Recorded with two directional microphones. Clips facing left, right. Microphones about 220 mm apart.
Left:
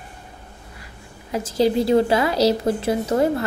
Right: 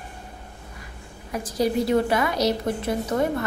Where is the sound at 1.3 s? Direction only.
25° left (ahead or behind).